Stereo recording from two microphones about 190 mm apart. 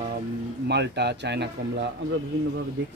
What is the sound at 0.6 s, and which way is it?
Speech, 60° right (ahead or behind).